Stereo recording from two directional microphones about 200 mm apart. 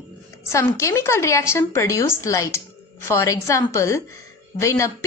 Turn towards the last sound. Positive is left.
turn(degrees=15)  # may be behind; listen again after turning